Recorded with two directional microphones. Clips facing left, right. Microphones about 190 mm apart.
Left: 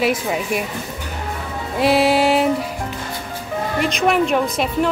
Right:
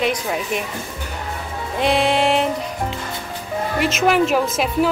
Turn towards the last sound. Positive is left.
turn(degrees=0)  # may be behind; listen again after turning